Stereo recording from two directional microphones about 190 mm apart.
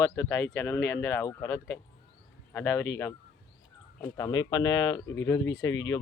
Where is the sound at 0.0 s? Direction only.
15° left (ahead or behind).